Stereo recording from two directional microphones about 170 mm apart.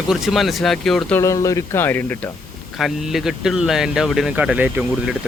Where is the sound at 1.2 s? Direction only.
20° left (ahead or behind).